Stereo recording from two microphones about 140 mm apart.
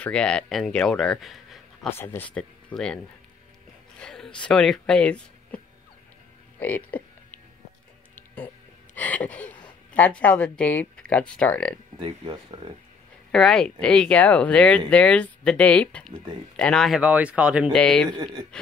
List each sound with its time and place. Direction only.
0.0 s a man's voice: 5° left (ahead or behind)
1.9 s speech: 15° left (ahead or behind)
4.0 s speech: 5° left (ahead or behind)
6.6 s music: 15° left (ahead or behind)
8.9 s a sound: 10° left (ahead or behind)
9.9 s speech: 10° left (ahead or behind)
12.0 s speech: 35° right (ahead or behind)
13.3 s speech: 5° left (ahead or behind)
17.0 s speech: 10° right (ahead or behind)
17.7 s speech: 5° left (ahead or behind)
18.1 s speech: 30° right (ahead or behind)